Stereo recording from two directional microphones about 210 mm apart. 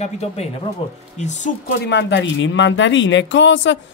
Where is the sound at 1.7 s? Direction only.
55° left (ahead or behind).